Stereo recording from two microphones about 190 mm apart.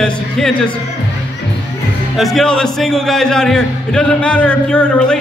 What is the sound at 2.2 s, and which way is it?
A man's voice, centre (ahead or behind).